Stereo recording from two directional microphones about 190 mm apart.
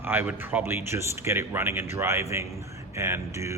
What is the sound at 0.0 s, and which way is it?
A man's voice, 10° right (ahead or behind).